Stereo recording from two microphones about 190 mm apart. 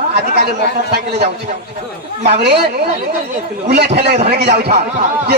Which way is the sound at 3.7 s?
60° right (ahead or behind).